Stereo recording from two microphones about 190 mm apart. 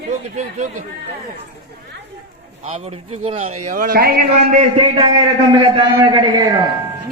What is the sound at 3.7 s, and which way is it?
Speech, 50° right (ahead or behind).